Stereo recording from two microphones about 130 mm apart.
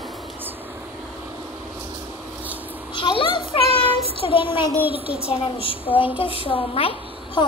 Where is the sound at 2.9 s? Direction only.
40° left (ahead or behind).